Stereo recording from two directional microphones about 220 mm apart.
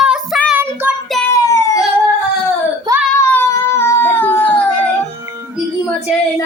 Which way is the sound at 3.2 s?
10° left (ahead or behind).